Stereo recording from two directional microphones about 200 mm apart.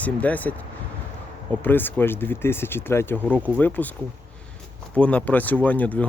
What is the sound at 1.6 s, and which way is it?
Speech, 10° left (ahead or behind).